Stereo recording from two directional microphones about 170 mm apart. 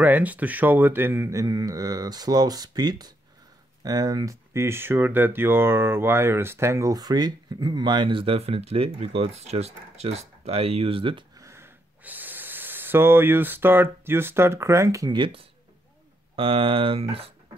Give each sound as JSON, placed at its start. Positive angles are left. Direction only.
{"t": 0.0, "sound": "speech", "side_deg": -10}
{"t": 11.3, "sound": "speech", "side_deg": -15}